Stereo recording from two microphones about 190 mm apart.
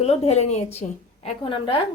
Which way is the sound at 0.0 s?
35° left (ahead or behind).